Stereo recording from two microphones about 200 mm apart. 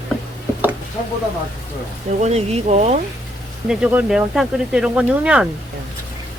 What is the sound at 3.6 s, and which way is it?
Speech, 5° right (ahead or behind).